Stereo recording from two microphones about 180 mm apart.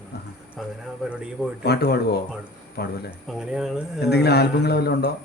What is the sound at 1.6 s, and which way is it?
A man's voice, 60° left (ahead or behind).